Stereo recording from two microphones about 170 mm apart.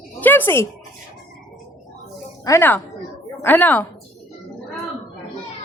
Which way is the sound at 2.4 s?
15° left (ahead or behind).